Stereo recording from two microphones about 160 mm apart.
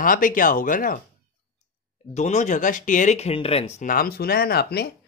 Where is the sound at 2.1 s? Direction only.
45° left (ahead or behind).